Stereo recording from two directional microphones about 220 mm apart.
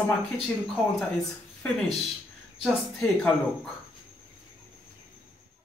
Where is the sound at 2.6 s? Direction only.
Centre (ahead or behind).